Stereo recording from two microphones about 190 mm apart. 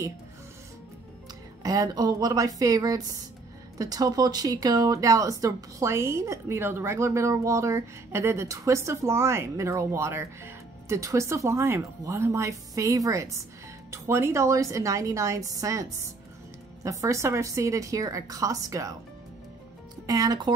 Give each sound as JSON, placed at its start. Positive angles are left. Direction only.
{"t": 1.6, "sound": "speech", "side_deg": -20}
{"t": 20.1, "sound": "speech", "side_deg": -20}